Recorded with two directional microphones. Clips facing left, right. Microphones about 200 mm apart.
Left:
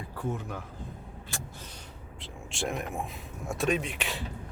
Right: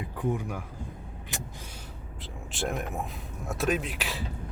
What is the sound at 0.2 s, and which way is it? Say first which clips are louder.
Speech: right 4 dB; 15° right (ahead or behind).